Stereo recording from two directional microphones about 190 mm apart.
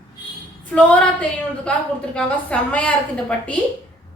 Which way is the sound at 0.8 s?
5° left (ahead or behind).